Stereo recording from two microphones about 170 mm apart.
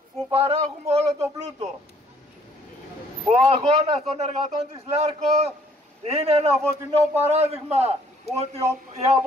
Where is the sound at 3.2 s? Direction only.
35° right (ahead or behind).